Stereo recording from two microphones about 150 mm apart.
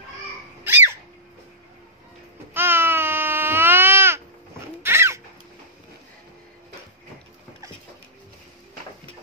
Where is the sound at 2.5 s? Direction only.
15° right (ahead or behind).